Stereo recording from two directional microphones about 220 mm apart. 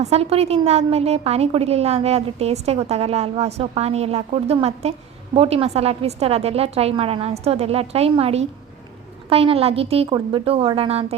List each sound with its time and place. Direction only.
0.0 s a woman's voice: 25° right (ahead or behind)